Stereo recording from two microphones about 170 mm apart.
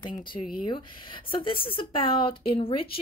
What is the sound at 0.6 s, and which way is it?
A woman's voice, 30° left (ahead or behind).